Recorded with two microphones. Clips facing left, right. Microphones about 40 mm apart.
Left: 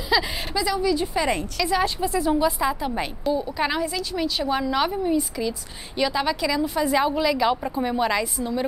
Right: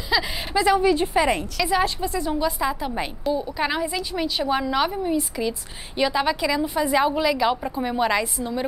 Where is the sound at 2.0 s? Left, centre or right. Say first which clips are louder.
Left 3 dB; centre.